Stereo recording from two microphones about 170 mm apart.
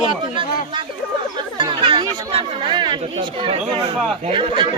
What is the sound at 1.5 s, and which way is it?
Speech, 30° right (ahead or behind).